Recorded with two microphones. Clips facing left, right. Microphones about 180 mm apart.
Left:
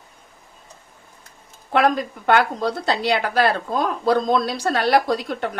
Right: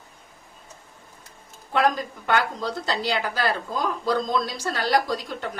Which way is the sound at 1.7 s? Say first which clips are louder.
Left 4 dB; 65° left (ahead or behind).